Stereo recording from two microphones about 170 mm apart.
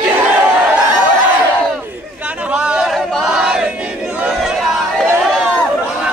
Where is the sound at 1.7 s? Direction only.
10° right (ahead or behind).